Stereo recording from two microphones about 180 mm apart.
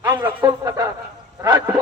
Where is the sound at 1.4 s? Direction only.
20° right (ahead or behind).